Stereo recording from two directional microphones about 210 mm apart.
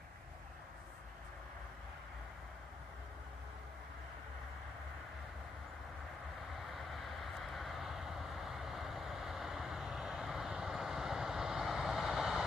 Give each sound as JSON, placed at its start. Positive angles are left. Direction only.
{"t": 6.7, "sound": "vehicle", "side_deg": 0}